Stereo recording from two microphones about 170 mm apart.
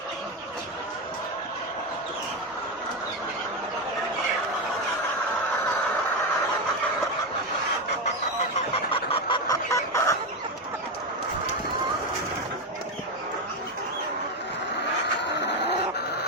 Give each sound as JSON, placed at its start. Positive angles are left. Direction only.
{"t": 8.7, "sound": "chicken", "side_deg": 30}
{"t": 9.5, "sound": "chicken", "side_deg": 20}
{"t": 15.2, "sound": "a sound", "side_deg": 90}